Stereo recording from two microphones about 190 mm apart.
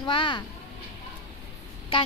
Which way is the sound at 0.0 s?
25° left (ahead or behind).